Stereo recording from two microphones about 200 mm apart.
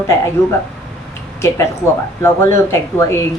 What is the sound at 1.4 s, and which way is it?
A woman's voice, 15° left (ahead or behind).